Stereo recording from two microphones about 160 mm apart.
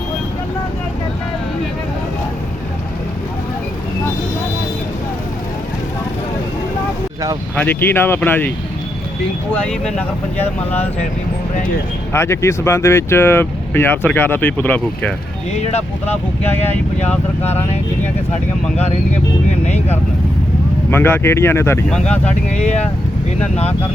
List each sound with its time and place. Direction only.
7.5 s speech: 10° left (ahead or behind)
12.1 s speech: 15° left (ahead or behind)
16.5 s speech: 10° left (ahead or behind)
20.9 s speech: 15° left (ahead or behind)
21.8 s speech: 5° left (ahead or behind)